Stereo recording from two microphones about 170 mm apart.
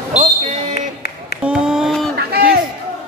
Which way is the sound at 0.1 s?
40° right (ahead or behind).